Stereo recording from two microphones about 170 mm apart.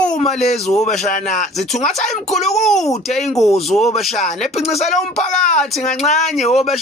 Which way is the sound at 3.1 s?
40° left (ahead or behind).